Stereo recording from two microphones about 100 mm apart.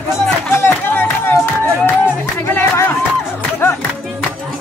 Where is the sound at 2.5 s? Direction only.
25° left (ahead or behind).